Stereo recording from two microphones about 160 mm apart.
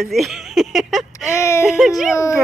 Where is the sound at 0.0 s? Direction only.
Centre (ahead or behind).